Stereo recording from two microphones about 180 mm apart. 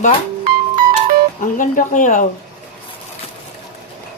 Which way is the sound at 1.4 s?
45° left (ahead or behind).